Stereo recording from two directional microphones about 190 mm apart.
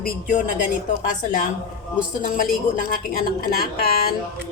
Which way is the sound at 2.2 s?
45° left (ahead or behind).